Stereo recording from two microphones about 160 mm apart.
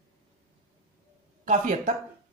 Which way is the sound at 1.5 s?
55° right (ahead or behind).